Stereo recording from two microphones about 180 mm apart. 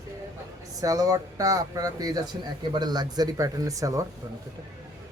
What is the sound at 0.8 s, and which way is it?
Speech, 20° right (ahead or behind).